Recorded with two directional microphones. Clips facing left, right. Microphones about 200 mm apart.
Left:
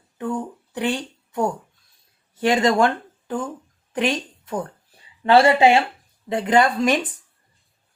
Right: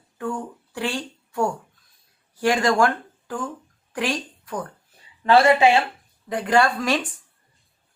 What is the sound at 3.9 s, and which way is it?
A woman's voice, 20° left (ahead or behind).